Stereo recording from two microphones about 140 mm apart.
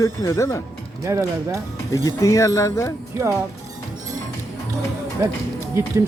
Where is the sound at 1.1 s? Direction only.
20° right (ahead or behind).